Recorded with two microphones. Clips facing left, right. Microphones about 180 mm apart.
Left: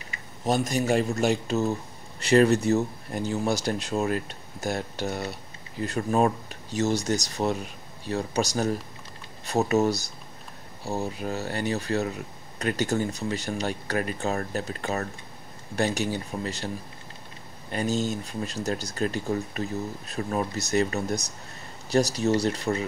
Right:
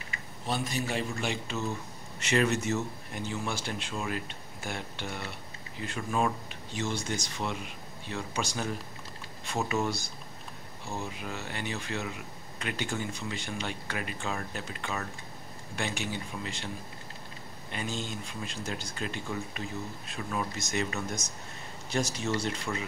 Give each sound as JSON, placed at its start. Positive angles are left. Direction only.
{"t": 0.5, "sound": "speech", "side_deg": 45}